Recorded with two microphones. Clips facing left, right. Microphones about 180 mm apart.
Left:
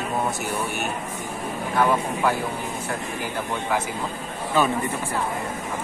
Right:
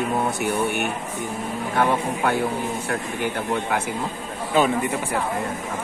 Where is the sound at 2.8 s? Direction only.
65° right (ahead or behind).